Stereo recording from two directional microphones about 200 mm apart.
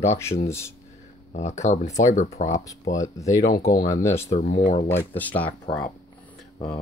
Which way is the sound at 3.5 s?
45° left (ahead or behind).